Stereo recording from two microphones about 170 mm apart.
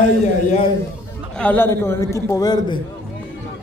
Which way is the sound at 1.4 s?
10° left (ahead or behind).